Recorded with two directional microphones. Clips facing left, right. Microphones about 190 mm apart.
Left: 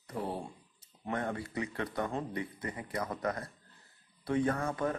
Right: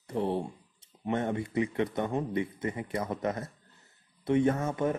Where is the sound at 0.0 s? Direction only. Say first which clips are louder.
Right 7 dB; 25° right (ahead or behind).